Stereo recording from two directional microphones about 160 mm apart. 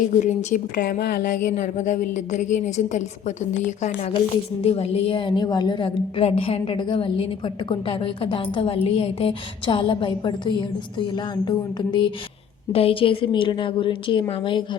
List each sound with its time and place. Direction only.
0.1 s a woman's voice: 50° left (ahead or behind)
4.6 s a woman's voice: 40° left (ahead or behind)